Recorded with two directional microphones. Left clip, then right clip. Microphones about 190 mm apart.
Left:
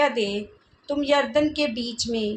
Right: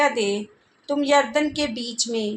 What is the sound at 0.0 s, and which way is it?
A woman's voice, 25° right (ahead or behind).